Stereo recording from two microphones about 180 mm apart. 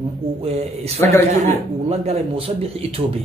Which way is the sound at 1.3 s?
40° right (ahead or behind).